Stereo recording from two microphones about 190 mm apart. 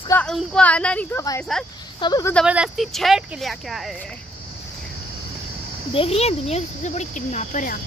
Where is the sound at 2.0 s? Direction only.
20° left (ahead or behind).